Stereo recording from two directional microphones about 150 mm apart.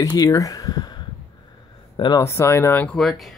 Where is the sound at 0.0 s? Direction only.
25° left (ahead or behind).